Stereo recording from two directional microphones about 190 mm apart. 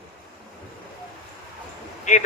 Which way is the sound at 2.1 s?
40° left (ahead or behind).